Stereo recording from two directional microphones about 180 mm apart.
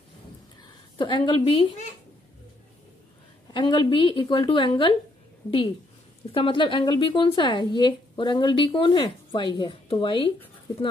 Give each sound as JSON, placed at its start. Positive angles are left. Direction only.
{"t": 0.9, "sound": "speech", "side_deg": 25}
{"t": 3.5, "sound": "speech", "side_deg": 25}
{"t": 6.3, "sound": "speech", "side_deg": 25}